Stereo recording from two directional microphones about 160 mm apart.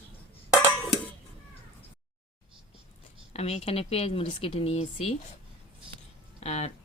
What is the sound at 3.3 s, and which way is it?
Speech, 40° left (ahead or behind).